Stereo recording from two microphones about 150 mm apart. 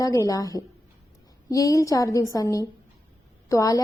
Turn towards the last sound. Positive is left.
turn(degrees=20)  # may be behind; listen again after turning